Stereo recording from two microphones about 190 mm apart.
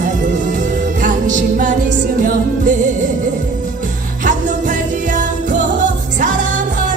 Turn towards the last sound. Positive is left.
turn(degrees=-40)  # may be behind; listen again after turning